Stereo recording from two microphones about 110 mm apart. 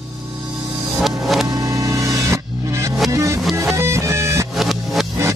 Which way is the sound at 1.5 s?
30° right (ahead or behind).